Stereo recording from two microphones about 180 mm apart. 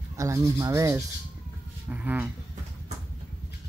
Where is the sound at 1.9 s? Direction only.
10° right (ahead or behind).